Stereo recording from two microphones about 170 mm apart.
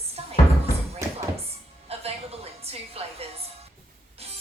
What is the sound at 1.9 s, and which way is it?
Music, 35° right (ahead or behind).